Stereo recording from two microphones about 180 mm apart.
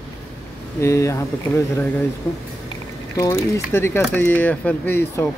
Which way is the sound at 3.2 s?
15° left (ahead or behind).